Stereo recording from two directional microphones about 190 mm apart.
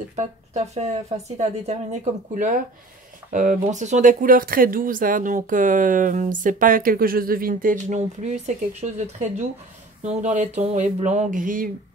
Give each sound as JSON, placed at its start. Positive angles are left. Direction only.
{"t": 0.1, "sound": "speech", "side_deg": -35}